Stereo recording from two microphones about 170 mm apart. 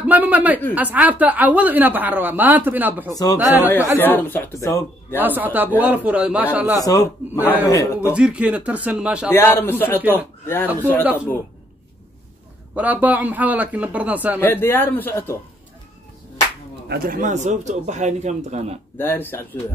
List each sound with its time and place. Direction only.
0.0 s a sound: 10° right (ahead or behind)
0.7 s a woman's voice: 10° right (ahead or behind)
4.0 s speech: 10° left (ahead or behind)
5.2 s a woman's voice: 10° right (ahead or behind)
6.8 s a man's voice: 20° left (ahead or behind)
8.0 s a woman's voice: 5° right (ahead or behind)
9.3 s speech: 15° left (ahead or behind)
12.7 s a woman's voice: 10° right (ahead or behind)
14.4 s speech: 10° left (ahead or behind)
16.9 s speech: 55° right (ahead or behind); by 18.8 s 40° right (ahead or behind)
18.9 s speech: 10° left (ahead or behind)